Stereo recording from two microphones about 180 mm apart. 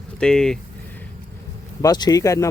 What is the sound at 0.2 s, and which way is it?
Speech, 5° left (ahead or behind).